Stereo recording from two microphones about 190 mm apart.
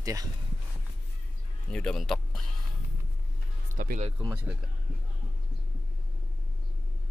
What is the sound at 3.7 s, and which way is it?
Speech, 45° right (ahead or behind).